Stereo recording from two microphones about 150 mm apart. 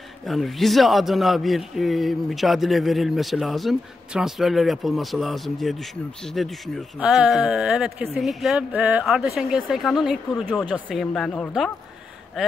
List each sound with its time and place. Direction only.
0.2 s a man's voice: centre (ahead or behind)